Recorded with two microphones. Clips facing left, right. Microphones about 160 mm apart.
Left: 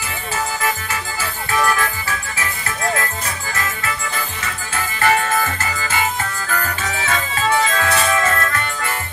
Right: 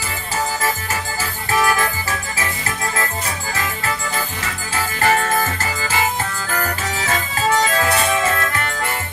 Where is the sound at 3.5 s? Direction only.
35° right (ahead or behind).